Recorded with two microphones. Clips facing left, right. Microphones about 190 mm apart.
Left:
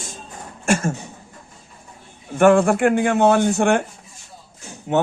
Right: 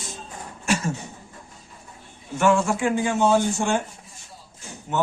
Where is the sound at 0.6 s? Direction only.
50° left (ahead or behind).